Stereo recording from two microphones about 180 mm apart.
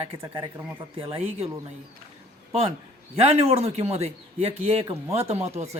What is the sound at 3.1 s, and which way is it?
A woman's voice, 35° right (ahead or behind).